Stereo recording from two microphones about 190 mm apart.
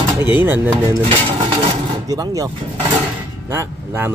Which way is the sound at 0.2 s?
10° right (ahead or behind).